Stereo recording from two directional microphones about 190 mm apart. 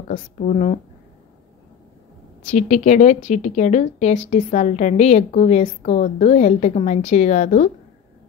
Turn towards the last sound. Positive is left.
turn(degrees=40)  # may be behind; listen again after turning